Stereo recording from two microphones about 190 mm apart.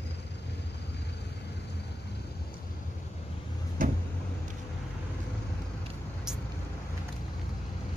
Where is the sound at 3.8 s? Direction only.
45° right (ahead or behind).